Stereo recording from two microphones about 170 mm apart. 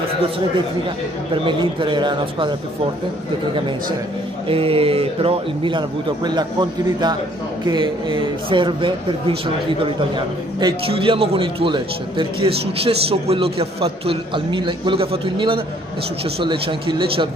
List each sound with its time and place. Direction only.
1.3 s a man's voice: 30° right (ahead or behind)
4.5 s a man's voice: 35° right (ahead or behind)